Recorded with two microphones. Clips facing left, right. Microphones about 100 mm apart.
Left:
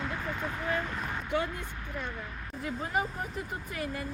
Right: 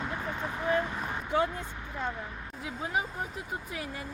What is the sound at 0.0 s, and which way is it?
Vehicle, 20° right (ahead or behind).